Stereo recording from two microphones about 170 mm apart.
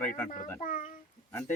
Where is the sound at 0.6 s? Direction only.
50° left (ahead or behind).